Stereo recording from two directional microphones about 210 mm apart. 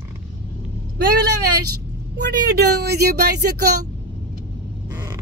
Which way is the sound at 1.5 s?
90° right.